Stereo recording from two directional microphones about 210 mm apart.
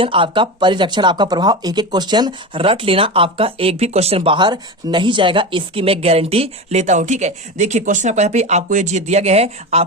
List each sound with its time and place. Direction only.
0.0 s speech: 25° right (ahead or behind)